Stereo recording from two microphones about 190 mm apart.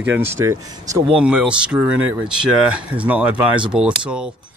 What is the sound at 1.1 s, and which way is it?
Speech, 5° right (ahead or behind).